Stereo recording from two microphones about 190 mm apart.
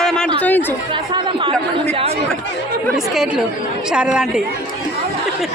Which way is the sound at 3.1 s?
5° right (ahead or behind).